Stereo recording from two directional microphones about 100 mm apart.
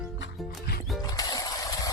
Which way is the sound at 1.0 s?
40° left (ahead or behind).